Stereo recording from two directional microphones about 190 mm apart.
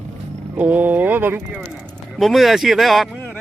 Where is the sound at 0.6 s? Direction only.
10° right (ahead or behind).